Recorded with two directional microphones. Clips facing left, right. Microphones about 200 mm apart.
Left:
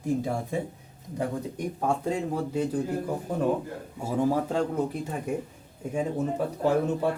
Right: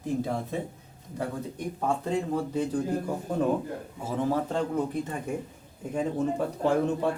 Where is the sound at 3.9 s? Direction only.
10° left (ahead or behind).